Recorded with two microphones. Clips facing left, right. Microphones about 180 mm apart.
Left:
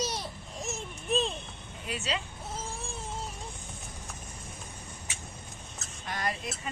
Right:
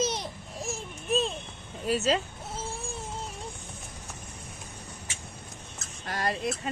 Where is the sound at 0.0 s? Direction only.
20° right (ahead or behind).